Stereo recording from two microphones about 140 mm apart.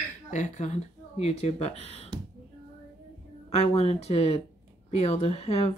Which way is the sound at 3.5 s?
45° left (ahead or behind).